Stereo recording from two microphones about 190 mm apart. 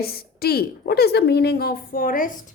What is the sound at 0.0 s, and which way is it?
Speech, 55° left (ahead or behind).